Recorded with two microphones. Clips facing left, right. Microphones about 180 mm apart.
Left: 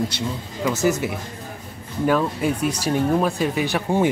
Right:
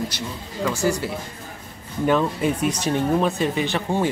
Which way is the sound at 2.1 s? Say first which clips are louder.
Right 1 dB; centre (ahead or behind).